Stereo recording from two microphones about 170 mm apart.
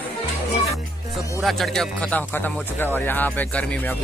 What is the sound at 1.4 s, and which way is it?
Speech, centre (ahead or behind).